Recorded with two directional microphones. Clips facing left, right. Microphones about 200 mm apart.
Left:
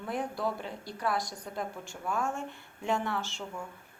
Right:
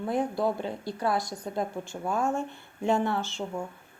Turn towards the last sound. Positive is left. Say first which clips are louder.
# right 6 dB
turn(degrees=-40)  # may be behind; listen again after turning